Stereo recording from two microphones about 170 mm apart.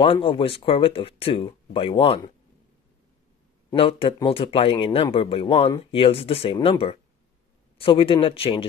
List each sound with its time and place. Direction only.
0.0 s speech: 30° left (ahead or behind)
3.7 s speech: 35° left (ahead or behind)